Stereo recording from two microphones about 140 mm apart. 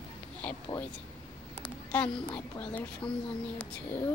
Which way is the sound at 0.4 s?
10° left (ahead or behind).